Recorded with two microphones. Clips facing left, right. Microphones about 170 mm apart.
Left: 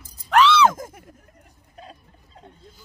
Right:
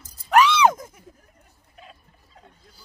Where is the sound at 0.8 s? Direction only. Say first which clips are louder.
Left 5 dB; 55° left (ahead or behind).